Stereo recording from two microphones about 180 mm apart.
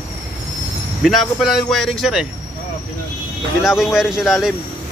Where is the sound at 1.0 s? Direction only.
Centre (ahead or behind).